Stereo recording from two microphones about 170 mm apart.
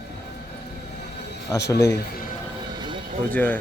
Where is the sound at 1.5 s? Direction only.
80° left.